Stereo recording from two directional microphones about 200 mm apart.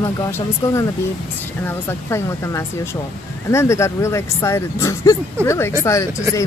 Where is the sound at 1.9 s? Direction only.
15° left (ahead or behind).